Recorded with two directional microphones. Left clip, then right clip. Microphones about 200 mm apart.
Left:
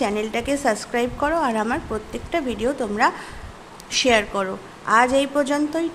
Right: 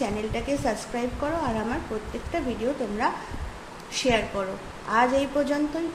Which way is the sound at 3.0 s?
40° left (ahead or behind).